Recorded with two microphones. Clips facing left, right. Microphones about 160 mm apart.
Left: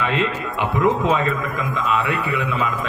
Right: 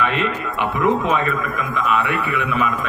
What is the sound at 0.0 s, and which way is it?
Speech, 20° left (ahead or behind).